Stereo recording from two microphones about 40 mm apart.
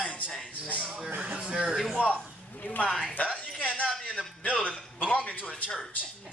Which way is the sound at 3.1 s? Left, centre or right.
Left.